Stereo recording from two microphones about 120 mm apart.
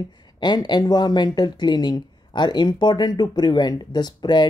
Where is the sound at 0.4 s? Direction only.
35° left (ahead or behind).